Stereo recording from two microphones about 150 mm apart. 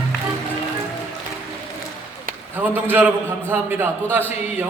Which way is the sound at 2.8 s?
15° right (ahead or behind).